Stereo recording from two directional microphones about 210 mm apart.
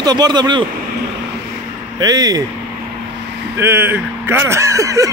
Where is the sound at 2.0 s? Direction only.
20° right (ahead or behind).